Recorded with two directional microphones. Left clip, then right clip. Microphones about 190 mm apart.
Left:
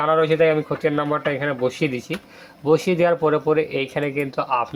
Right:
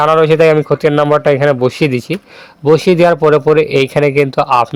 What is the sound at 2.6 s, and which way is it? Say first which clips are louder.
Speech: right 9 dB; 45° right (ahead or behind).